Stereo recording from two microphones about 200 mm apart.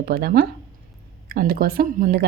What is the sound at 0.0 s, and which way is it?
Speech, 50° right (ahead or behind).